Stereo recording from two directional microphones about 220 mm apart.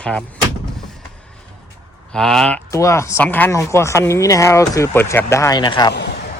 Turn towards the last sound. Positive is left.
turn(degrees=50)  # may be behind; listen again after turning